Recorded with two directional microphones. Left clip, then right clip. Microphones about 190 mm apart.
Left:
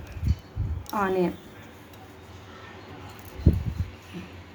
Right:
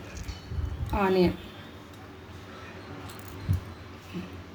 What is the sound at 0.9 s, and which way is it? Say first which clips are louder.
Speech: right 1 dB; 10° left (ahead or behind).